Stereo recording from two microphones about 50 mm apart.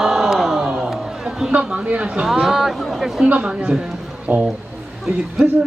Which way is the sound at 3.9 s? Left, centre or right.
Centre.